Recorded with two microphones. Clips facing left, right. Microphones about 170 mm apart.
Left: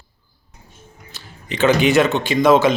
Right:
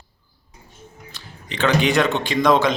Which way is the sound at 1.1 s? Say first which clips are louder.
Left 4 dB; 5° left (ahead or behind).